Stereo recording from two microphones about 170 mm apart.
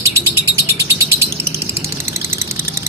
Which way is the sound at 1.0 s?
15° right (ahead or behind).